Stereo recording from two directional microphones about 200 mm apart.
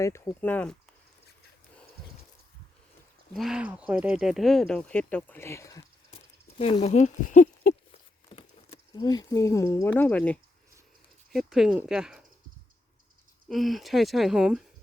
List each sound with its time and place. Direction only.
0.0 s speech: 10° left (ahead or behind)
3.3 s speech: centre (ahead or behind); by 5.8 s 15° left (ahead or behind)
6.6 s speech: 30° left (ahead or behind)
8.3 s speech: 25° left (ahead or behind); by 12.2 s 5° right (ahead or behind)
13.5 s speech: centre (ahead or behind)